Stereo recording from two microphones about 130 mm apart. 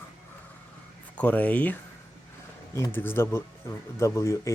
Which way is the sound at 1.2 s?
10° left (ahead or behind).